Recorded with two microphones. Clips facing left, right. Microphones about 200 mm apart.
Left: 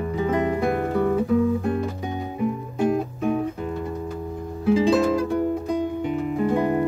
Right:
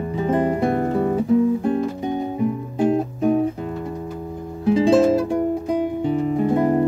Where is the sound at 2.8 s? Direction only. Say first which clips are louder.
Right 3 dB; 30° right (ahead or behind).